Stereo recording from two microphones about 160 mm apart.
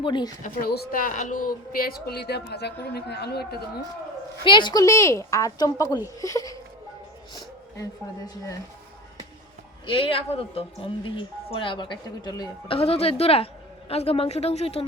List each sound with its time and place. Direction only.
0.0 s a woman's voice: 30° left (ahead or behind)
0.4 s a woman's voice: 75° left (ahead or behind); by 3.6 s 90° left
4.4 s a woman's voice: 30° left (ahead or behind)
9.8 s speech: 35° left (ahead or behind)